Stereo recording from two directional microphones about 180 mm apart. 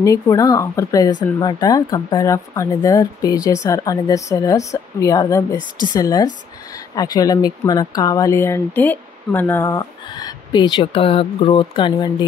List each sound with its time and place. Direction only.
0.0 s a woman's voice: 20° left (ahead or behind)